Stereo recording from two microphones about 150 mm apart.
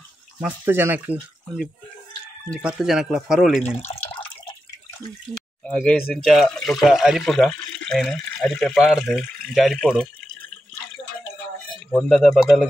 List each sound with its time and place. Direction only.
0.4 s speech: 10° right (ahead or behind)
2.6 s speech: 5° right (ahead or behind)
3.7 s water: 40° left (ahead or behind)
6.1 s speech: centre (ahead or behind)
11.9 s speech: 5° left (ahead or behind)